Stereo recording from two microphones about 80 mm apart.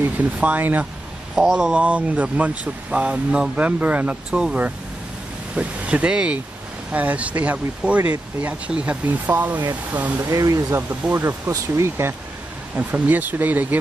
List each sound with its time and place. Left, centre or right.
0.0 s speech: right
1.4 s speech: centre
10.3 s speech: right
10.8 s speech: right
11.2 s speech: right
12.7 s speech: right